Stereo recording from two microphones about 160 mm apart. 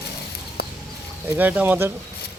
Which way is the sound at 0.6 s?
90° left.